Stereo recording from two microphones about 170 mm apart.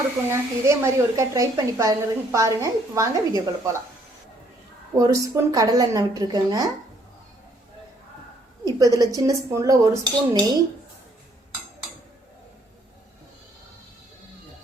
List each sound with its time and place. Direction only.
0.3 s a woman's voice: 15° right (ahead or behind)
4.9 s dishes: 20° right (ahead or behind)
8.6 s dishes: 20° right (ahead or behind)